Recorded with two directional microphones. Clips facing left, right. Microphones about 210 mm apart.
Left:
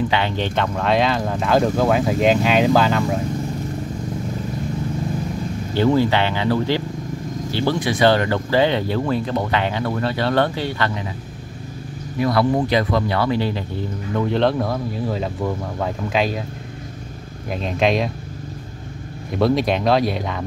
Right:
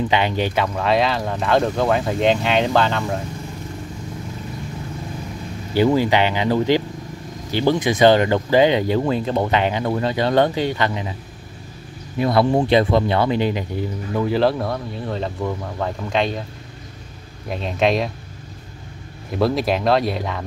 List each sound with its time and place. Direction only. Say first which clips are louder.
0.1 s speech: right 2 dB; 15° right (ahead or behind); by 3.2 s 5° left (ahead or behind)
5.8 s speech: right 1 dB; 15° right (ahead or behind)
12.2 s speech: right 1 dB; 25° right (ahead or behind)
14.1 s speech: even; 5° right (ahead or behind)
17.5 s speech: even; centre (ahead or behind)
19.3 s speech: left 1 dB; centre (ahead or behind)